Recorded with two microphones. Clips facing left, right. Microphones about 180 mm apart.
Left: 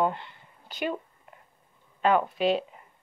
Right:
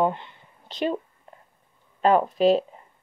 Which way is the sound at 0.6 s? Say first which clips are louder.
Right 5 dB; 30° right (ahead or behind).